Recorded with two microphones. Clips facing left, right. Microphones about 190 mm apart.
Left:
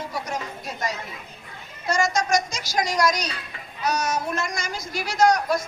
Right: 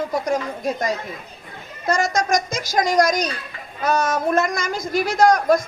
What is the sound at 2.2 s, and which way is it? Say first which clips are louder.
A woman's voice: right 2 dB; 50° right (ahead or behind).